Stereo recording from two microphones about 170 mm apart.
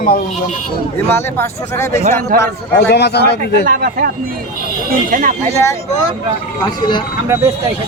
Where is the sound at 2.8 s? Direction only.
75° left (ahead or behind).